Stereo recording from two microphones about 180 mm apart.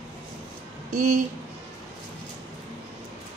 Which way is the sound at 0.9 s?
45° right (ahead or behind).